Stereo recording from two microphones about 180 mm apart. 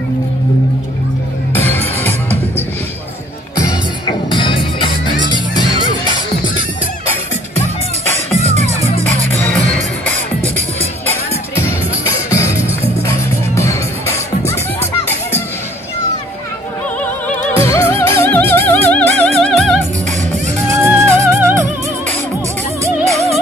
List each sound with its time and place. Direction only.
1.5 s music: 10° left (ahead or behind)
4.0 s music: 25° left (ahead or behind)
9.4 s music: 5° left (ahead or behind)
12.0 s music: 15° left (ahead or behind)
13.6 s music: 15° left (ahead or behind)
17.0 s music: 10° left (ahead or behind)
20.6 s music: 15° right (ahead or behind)